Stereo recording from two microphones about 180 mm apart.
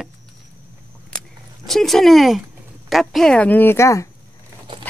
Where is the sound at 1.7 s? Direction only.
Centre (ahead or behind).